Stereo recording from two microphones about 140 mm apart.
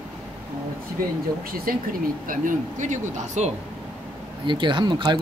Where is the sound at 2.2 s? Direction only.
65° right (ahead or behind).